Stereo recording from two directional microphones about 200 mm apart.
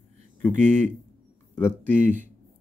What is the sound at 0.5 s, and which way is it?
Speech, 35° right (ahead or behind).